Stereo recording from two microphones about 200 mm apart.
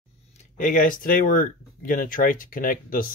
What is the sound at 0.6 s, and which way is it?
Speech, 40° left (ahead or behind).